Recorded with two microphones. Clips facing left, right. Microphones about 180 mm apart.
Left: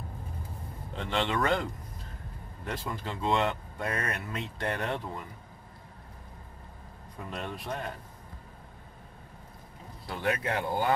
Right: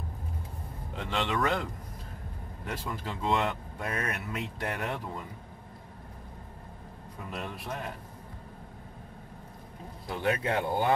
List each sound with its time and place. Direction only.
0.9 s speech: centre (ahead or behind)
7.2 s speech: 5° right (ahead or behind)
10.0 s speech: 25° right (ahead or behind)